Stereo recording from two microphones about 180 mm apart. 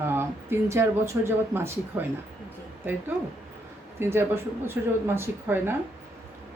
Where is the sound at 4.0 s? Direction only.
15° right (ahead or behind).